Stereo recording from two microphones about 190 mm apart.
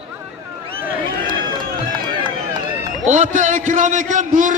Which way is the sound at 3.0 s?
40° right (ahead or behind).